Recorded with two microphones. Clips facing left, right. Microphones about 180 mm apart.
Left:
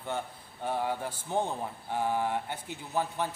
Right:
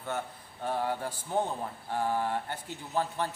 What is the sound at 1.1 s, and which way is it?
Speech, 10° right (ahead or behind).